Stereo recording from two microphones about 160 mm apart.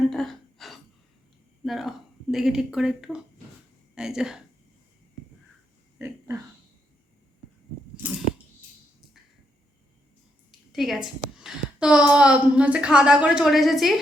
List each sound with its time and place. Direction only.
0.1 s gasp: centre (ahead or behind)
1.6 s a woman's voice: centre (ahead or behind)
6.0 s a sound: 15° right (ahead or behind)
10.7 s a woman's voice: centre (ahead or behind)